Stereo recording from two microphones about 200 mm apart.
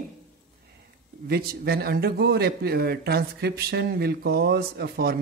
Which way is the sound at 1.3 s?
50° right (ahead or behind).